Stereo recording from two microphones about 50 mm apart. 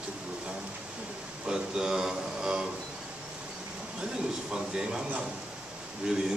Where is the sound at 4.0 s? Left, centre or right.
Centre.